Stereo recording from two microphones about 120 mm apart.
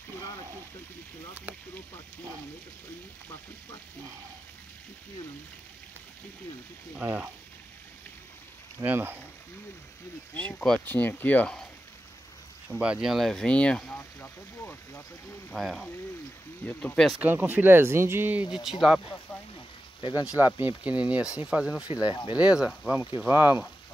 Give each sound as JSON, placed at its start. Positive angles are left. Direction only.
{"t": 7.0, "sound": "speech", "side_deg": -15}
{"t": 8.8, "sound": "speech", "side_deg": -15}
{"t": 10.3, "sound": "speech", "side_deg": 10}
{"t": 12.6, "sound": "speech", "side_deg": -5}
{"t": 15.5, "sound": "speech", "side_deg": 0}
{"t": 17.2, "sound": "speech", "side_deg": -15}
{"t": 20.0, "sound": "speech", "side_deg": 35}
{"t": 20.3, "sound": "speech", "side_deg": -15}
{"t": 22.1, "sound": "speech", "side_deg": 40}
{"t": 22.4, "sound": "speech", "side_deg": -10}